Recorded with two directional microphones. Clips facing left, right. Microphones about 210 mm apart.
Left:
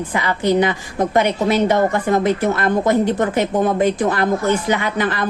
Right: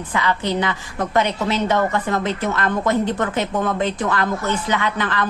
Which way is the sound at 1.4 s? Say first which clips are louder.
Left 4 dB; 15° left (ahead or behind).